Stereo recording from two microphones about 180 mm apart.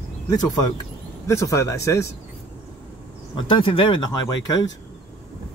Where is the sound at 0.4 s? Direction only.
20° left (ahead or behind).